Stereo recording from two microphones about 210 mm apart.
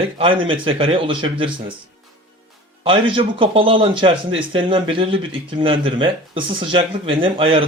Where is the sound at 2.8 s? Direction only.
25° right (ahead or behind).